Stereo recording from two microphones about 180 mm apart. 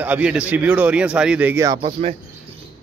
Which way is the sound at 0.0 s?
5° right (ahead or behind).